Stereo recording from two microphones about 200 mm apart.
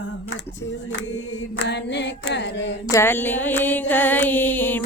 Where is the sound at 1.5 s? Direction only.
60° left (ahead or behind).